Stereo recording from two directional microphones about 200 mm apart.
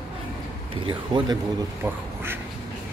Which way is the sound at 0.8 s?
25° right (ahead or behind).